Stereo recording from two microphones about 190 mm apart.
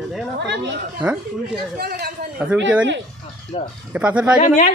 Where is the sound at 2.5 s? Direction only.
10° right (ahead or behind).